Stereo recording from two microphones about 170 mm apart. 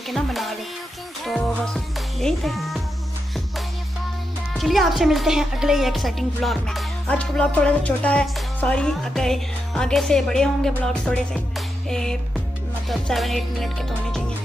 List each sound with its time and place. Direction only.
0.1 s a woman's voice: centre (ahead or behind)
4.6 s a woman's voice: centre (ahead or behind)
10.8 s music: 5° left (ahead or behind)
12.8 s a woman's voice: centre (ahead or behind)